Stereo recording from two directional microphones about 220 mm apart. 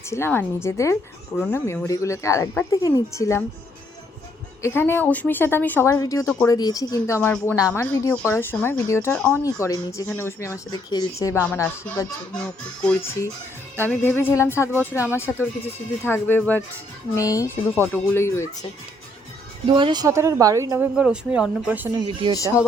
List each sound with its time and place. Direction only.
0.1 s speech: 10° left (ahead or behind)
4.6 s speech: 10° left (ahead or behind)
19.6 s a woman's voice: 20° right (ahead or behind); by 21.8 s 5° right (ahead or behind)
21.9 s speech: 25° right (ahead or behind)